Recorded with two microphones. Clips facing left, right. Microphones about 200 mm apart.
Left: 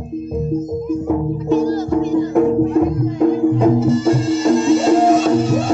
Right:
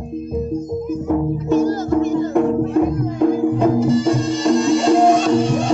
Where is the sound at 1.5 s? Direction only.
45° right (ahead or behind).